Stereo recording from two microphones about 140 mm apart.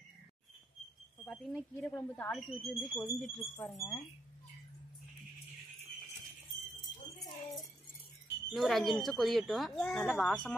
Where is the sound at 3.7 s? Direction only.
25° left (ahead or behind).